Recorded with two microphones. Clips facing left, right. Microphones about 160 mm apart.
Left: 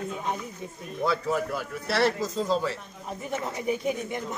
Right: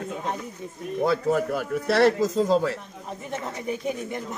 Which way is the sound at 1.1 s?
50° right (ahead or behind).